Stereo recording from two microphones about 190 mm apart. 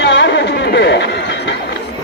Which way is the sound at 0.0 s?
65° left (ahead or behind).